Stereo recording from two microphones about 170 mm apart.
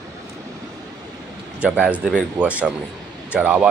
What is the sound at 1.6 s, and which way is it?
Speech, 10° right (ahead or behind).